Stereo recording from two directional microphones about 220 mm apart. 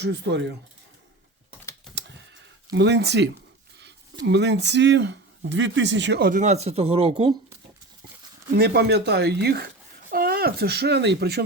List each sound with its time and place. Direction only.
0.0 s speech: 50° right (ahead or behind)
2.6 s speech: 55° right (ahead or behind); by 7.3 s 30° right (ahead or behind)
8.5 s speech: 45° right (ahead or behind)